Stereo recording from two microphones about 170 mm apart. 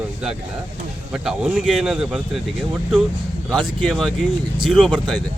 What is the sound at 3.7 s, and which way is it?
Speech, centre (ahead or behind).